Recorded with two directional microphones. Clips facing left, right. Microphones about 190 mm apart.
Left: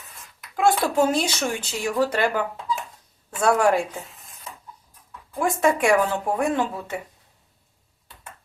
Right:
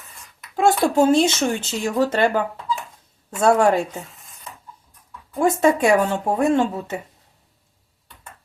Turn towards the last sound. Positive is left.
turn(degrees=-25)  # may be behind; listen again after turning